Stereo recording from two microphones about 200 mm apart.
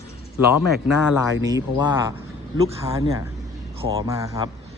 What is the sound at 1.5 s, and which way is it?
A man's voice, 20° right (ahead or behind).